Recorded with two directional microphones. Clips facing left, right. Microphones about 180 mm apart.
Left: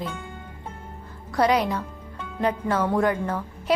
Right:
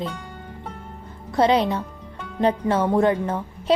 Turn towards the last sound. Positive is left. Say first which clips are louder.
# right 3 dB
turn(degrees=-25)  # may be behind; listen again after turning